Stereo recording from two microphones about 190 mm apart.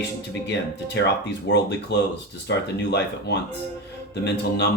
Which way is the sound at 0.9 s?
65° left (ahead or behind).